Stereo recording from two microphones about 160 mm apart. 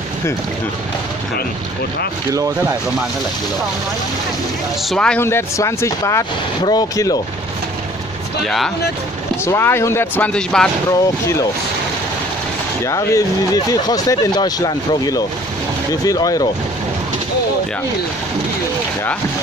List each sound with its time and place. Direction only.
4.8 s speech: 5° left (ahead or behind)
5.2 s speech: 15° left (ahead or behind)
8.5 s speech: centre (ahead or behind)
9.4 s speech: 15° left (ahead or behind)
10.9 s speech: 20° left (ahead or behind)
12.8 s speech: 20° left (ahead or behind)